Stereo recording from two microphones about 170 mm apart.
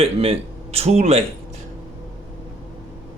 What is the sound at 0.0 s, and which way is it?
Speech, 35° right (ahead or behind).